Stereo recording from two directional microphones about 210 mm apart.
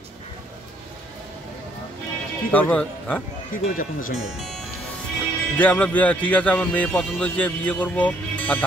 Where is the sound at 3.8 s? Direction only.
40° left (ahead or behind).